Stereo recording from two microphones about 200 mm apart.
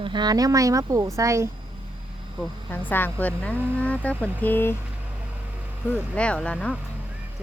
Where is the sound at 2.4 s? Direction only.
10° left (ahead or behind).